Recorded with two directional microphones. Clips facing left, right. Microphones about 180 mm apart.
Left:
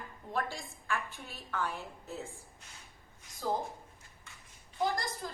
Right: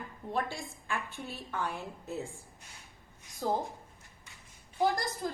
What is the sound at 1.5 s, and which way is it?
Speech, 15° right (ahead or behind).